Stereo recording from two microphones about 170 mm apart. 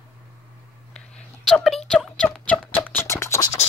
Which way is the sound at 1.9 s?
5° left (ahead or behind).